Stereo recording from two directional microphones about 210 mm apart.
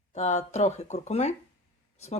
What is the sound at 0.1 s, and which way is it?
Speech, 35° left (ahead or behind).